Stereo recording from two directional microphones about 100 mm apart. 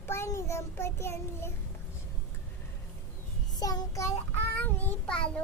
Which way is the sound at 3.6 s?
40° left (ahead or behind).